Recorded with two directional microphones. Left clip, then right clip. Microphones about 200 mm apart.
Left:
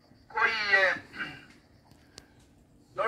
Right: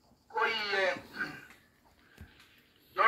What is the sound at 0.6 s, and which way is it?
Cat, 20° left (ahead or behind).